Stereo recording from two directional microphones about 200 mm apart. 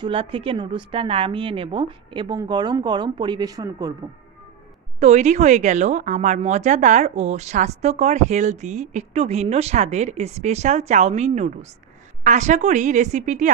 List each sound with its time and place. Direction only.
0.0 s a woman's voice: 25° right (ahead or behind)
5.0 s speech: 35° right (ahead or behind)